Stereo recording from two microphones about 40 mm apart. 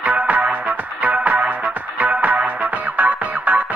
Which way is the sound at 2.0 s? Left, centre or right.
Right.